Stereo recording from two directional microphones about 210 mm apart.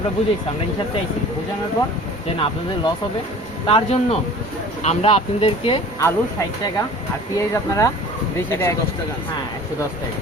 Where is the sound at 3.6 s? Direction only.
30° left (ahead or behind).